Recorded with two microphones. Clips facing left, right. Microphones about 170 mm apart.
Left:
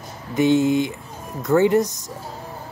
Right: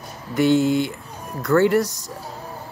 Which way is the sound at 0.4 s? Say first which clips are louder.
Even; 20° left (ahead or behind).